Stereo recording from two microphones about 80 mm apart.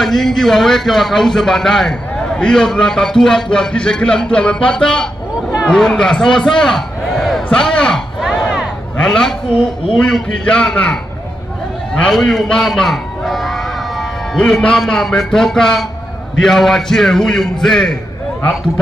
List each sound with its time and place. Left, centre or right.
0.0 s a man's voice: centre
8.2 s a sound: centre
9.0 s a man's voice: centre